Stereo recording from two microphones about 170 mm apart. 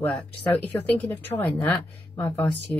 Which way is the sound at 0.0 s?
10° left (ahead or behind).